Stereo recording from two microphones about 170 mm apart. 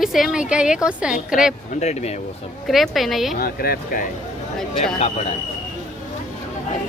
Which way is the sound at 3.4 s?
60° left (ahead or behind).